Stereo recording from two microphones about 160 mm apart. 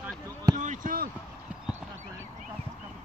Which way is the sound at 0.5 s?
50° right (ahead or behind).